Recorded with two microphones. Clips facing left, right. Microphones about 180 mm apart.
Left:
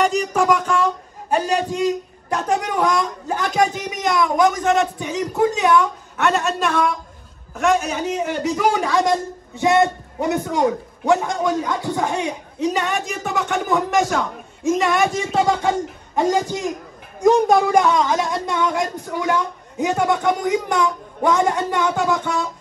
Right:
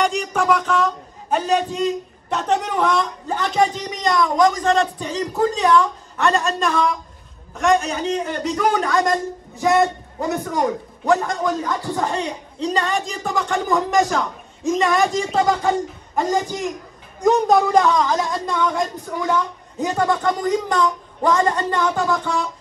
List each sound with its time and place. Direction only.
0.0 s speech: 5° left (ahead or behind)
11.1 s a man's voice: 20° left (ahead or behind)
11.4 s speech: centre (ahead or behind)